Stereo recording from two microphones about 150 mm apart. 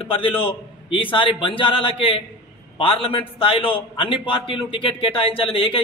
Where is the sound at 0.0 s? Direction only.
35° left (ahead or behind).